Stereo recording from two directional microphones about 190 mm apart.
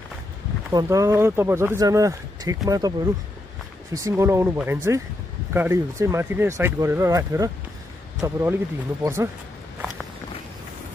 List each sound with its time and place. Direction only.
0.7 s speech: 15° right (ahead or behind)